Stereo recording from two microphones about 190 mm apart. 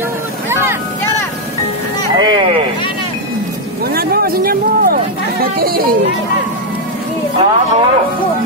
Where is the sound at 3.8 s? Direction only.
55° right (ahead or behind).